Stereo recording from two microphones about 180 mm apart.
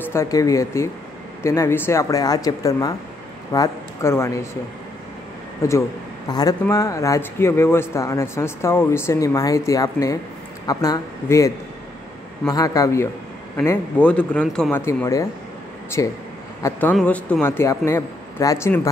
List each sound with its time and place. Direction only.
0.0 s speech: 15° left (ahead or behind)
5.6 s speech: 15° left (ahead or behind)
16.9 s speech: 5° left (ahead or behind)